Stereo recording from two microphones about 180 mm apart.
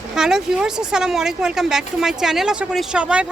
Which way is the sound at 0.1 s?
5° right (ahead or behind).